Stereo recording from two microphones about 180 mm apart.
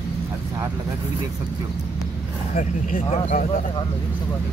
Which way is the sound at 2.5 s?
40° left (ahead or behind).